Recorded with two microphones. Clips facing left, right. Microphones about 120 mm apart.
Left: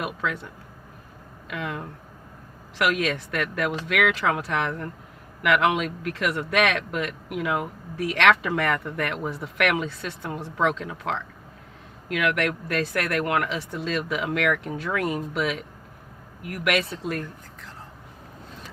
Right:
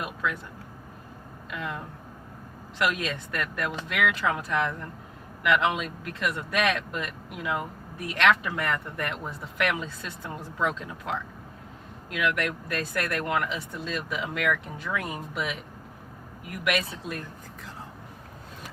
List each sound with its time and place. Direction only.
1.5 s speech: 80° left
9.2 s speech: 80° left